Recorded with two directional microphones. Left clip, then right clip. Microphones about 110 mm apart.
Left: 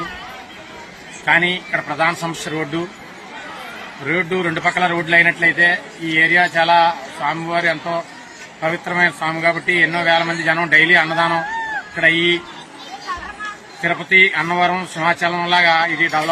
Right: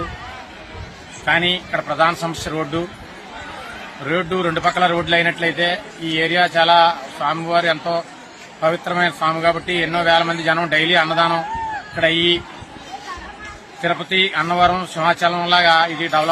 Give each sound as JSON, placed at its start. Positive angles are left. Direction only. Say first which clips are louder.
{"t": 1.2, "sound": "speech", "louder": "left 2 dB", "side_deg": -25}
{"t": 4.1, "sound": "speech", "louder": "even", "side_deg": -25}
{"t": 13.8, "sound": "speech", "louder": "left 5 dB", "side_deg": -25}